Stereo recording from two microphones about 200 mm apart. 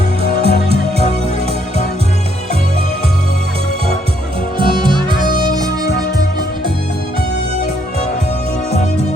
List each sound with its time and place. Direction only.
0.2 s music: 30° right (ahead or behind)
4.5 s harmonica: 25° right (ahead or behind)